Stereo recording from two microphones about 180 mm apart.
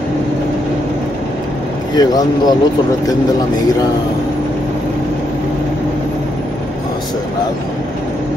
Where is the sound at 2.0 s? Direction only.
20° left (ahead or behind).